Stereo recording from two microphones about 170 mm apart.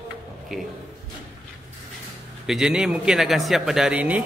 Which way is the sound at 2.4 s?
5° right (ahead or behind).